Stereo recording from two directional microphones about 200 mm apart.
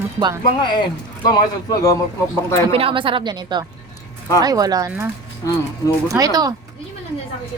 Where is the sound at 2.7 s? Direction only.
25° right (ahead or behind).